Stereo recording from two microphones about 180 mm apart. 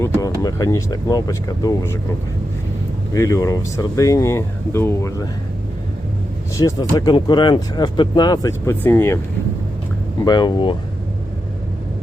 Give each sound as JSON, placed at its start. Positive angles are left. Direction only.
{"t": 0.4, "sound": "speech", "side_deg": 20}
{"t": 3.1, "sound": "speech", "side_deg": 15}
{"t": 6.6, "sound": "speech", "side_deg": 15}
{"t": 10.2, "sound": "speech", "side_deg": 25}